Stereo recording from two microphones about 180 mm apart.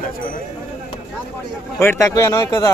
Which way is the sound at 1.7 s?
15° left (ahead or behind).